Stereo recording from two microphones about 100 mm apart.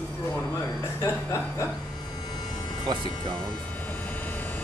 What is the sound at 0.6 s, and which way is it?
Speech, 25° left (ahead or behind).